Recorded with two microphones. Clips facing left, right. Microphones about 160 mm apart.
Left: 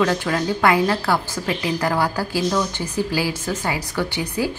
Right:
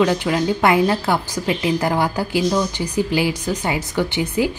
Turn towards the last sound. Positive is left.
turn(degrees=-20)  # may be behind; listen again after turning